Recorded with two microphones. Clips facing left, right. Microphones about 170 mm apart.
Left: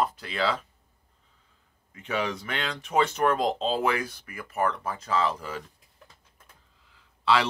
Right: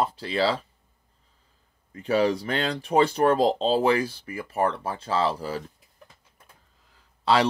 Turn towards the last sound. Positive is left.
turn(degrees=-40)  # may be behind; listen again after turning